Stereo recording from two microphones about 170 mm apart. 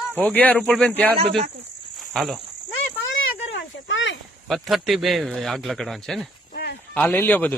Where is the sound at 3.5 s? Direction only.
90° left.